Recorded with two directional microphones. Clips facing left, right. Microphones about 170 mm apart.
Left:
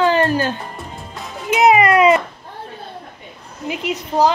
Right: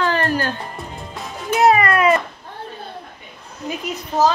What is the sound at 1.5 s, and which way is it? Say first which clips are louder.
Music: left 2 dB; 15° left (ahead or behind).